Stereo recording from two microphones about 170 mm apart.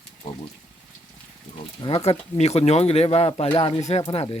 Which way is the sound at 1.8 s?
30° left (ahead or behind).